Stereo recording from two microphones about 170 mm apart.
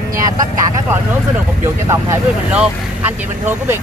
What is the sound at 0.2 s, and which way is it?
Speech, 20° right (ahead or behind).